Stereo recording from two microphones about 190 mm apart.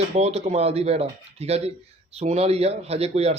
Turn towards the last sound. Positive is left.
turn(degrees=-35)  # may be behind; listen again after turning